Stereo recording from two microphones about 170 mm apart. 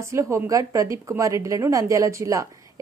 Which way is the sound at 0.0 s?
15° right (ahead or behind).